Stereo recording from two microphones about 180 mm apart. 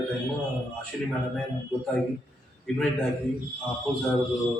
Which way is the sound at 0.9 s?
Centre (ahead or behind).